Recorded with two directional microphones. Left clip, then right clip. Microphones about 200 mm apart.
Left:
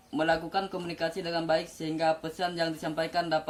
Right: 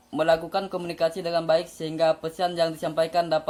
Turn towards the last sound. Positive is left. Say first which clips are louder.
# right 6 dB
turn(degrees=-30)  # may be behind; listen again after turning